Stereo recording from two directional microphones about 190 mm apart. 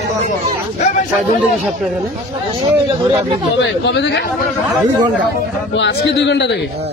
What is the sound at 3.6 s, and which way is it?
Speech, 65° left (ahead or behind).